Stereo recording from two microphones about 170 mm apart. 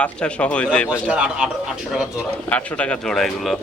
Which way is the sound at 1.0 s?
5° right (ahead or behind).